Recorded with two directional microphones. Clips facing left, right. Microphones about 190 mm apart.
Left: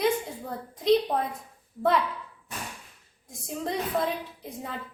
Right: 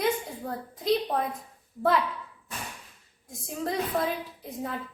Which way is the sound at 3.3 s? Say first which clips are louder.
Even; centre (ahead or behind).